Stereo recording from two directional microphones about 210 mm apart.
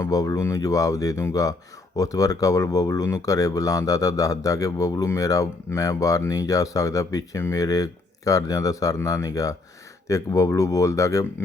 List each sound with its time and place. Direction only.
0.0 s speech: 15° left (ahead or behind)